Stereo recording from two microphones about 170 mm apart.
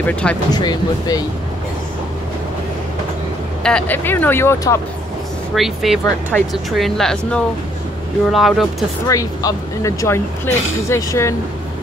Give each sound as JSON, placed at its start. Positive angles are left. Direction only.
{"t": 0.0, "sound": "speech", "side_deg": 10}
{"t": 0.5, "sound": "speech", "side_deg": 25}
{"t": 3.6, "sound": "speech", "side_deg": 5}
{"t": 5.5, "sound": "speech", "side_deg": 0}
{"t": 9.0, "sound": "speech", "side_deg": 20}